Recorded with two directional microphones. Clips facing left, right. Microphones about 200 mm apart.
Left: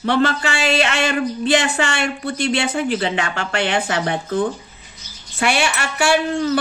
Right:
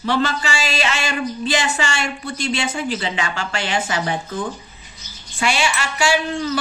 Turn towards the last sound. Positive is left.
turn(degrees=55)  # may be behind; listen again after turning